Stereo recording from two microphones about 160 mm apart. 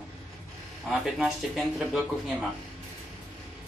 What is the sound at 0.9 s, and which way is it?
Speech, centre (ahead or behind).